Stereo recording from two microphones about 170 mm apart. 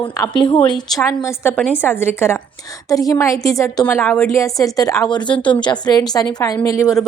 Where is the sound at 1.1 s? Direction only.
15° left (ahead or behind).